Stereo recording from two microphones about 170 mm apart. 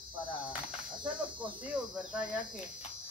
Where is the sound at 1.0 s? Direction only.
30° right (ahead or behind).